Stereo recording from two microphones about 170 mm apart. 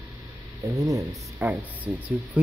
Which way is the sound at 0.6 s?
20° right (ahead or behind).